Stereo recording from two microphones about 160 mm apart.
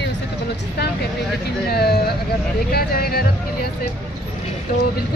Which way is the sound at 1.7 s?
80° left.